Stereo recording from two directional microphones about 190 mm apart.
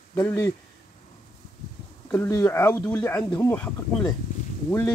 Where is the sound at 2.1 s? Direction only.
15° left (ahead or behind).